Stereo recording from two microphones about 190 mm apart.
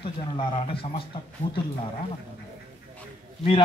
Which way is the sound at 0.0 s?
25° left (ahead or behind).